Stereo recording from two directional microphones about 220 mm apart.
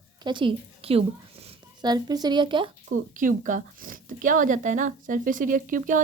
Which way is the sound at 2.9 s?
35° right (ahead or behind).